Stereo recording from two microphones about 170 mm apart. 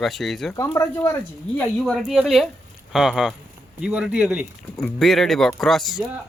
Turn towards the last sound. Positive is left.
turn(degrees=0)  # may be behind; listen again after turning